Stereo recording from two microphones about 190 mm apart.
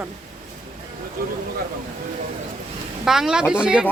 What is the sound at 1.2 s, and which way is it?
Speech, 50° right (ahead or behind).